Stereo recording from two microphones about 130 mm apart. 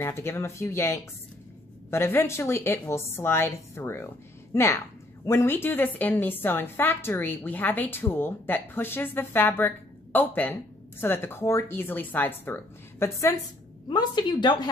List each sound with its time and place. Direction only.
0.0 s a woman's voice: 20° left (ahead or behind)
13.8 s a woman's voice: 35° left (ahead or behind)